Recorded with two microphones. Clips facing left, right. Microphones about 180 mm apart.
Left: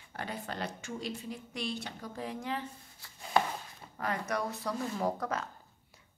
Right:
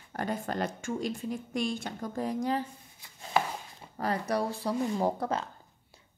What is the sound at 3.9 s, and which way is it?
A woman's voice, 35° right (ahead or behind).